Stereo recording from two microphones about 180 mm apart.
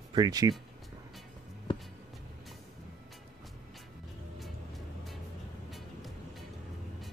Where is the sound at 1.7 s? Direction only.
30° left (ahead or behind).